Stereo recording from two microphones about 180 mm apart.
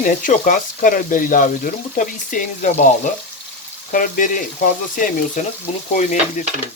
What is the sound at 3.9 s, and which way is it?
Speech, 50° left (ahead or behind).